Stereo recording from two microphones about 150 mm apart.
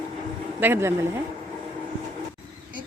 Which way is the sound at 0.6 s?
15° right (ahead or behind).